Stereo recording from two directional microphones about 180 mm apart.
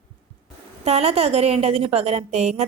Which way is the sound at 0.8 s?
35° right (ahead or behind).